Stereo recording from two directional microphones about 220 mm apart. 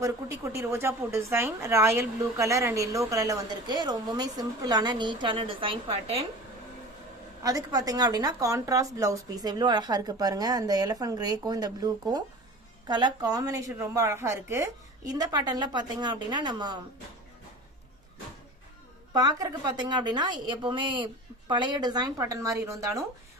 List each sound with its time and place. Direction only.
0.0 s a woman's voice: 15° right (ahead or behind)
7.4 s a woman's voice: 15° right (ahead or behind)
19.1 s a woman's voice: 15° right (ahead or behind)